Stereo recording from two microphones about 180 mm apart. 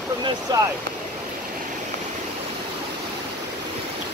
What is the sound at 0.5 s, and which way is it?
Speech, 20° right (ahead or behind).